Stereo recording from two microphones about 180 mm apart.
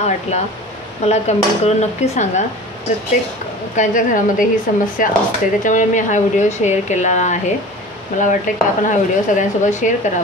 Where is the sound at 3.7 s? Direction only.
45° left (ahead or behind).